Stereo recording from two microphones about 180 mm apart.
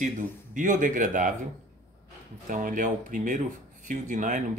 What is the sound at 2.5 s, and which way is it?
Speech, 45° right (ahead or behind).